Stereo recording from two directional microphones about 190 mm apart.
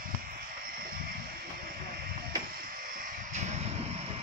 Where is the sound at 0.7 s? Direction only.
50° right (ahead or behind).